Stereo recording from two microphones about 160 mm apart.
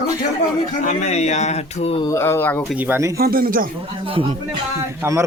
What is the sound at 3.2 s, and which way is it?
Speech, 70° right (ahead or behind).